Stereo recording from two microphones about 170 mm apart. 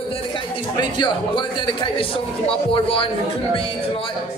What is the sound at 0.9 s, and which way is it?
Speech, 30° left (ahead or behind).